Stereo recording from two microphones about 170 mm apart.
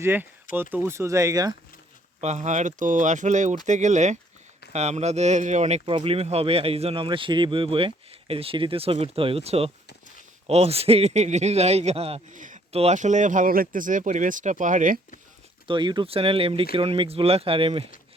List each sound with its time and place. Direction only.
0.0 s speech: 10° right (ahead or behind)
2.2 s speech: 45° right (ahead or behind)
15.6 s speech: 30° right (ahead or behind)